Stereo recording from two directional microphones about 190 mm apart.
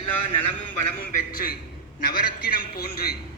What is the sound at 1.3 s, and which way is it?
A man's voice, 50° left (ahead or behind).